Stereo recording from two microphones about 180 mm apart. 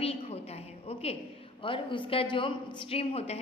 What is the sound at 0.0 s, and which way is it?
A woman's voice, 35° left (ahead or behind).